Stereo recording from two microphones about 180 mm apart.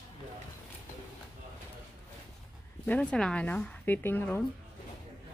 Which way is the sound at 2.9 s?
5° left (ahead or behind).